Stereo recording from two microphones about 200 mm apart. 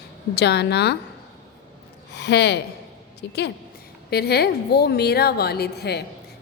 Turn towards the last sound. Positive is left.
turn(degrees=55)  # may be behind; listen again after turning